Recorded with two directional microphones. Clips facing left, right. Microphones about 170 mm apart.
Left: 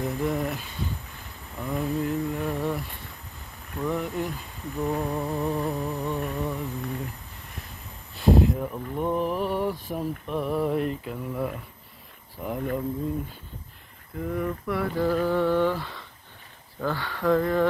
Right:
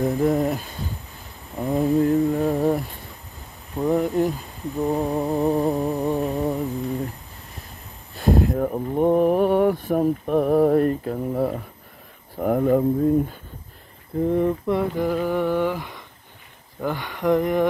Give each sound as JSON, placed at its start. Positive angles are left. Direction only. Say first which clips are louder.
{"t": 0.0, "sound": "humming", "louder": "right 7 dB", "side_deg": -40}
{"t": 4.7, "sound": "humming", "louder": "right 5 dB", "side_deg": -25}
{"t": 8.2, "sound": "speech", "louder": "right 2 dB", "side_deg": -50}
{"t": 12.4, "sound": "speech", "louder": "right 10 dB", "side_deg": -50}
{"t": 14.1, "sound": "a sound", "louder": "right 9 dB", "side_deg": -30}